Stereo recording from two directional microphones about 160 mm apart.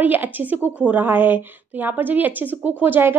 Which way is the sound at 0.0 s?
10° right (ahead or behind).